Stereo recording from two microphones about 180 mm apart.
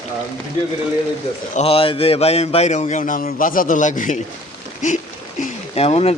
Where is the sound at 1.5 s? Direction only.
30° left (ahead or behind).